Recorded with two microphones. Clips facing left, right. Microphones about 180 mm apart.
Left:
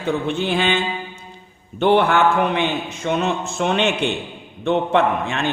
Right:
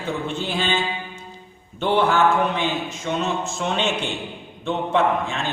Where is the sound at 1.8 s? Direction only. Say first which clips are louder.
Left 3 dB; 60° left (ahead or behind).